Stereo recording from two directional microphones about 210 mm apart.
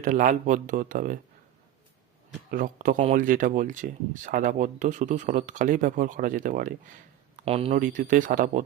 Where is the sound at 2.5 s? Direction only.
40° right (ahead or behind).